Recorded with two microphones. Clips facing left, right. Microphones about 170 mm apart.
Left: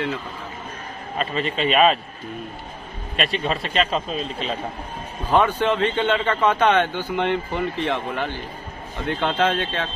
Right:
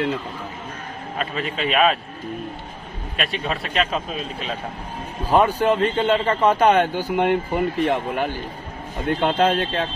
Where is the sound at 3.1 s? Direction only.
Centre (ahead or behind).